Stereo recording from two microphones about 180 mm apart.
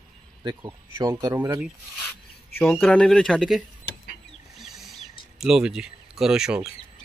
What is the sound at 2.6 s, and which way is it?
Speech, 5° left (ahead or behind).